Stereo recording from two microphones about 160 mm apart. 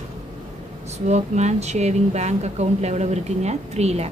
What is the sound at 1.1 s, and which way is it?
A woman's voice, 45° right (ahead or behind).